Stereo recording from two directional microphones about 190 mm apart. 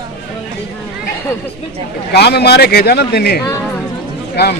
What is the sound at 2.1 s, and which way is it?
A man's voice, 60° left (ahead or behind).